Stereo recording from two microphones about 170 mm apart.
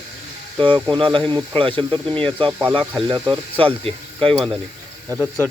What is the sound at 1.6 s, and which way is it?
Speech, 30° right (ahead or behind).